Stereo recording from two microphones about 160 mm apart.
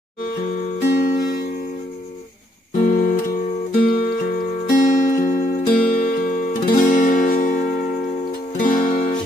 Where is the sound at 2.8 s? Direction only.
60° left (ahead or behind).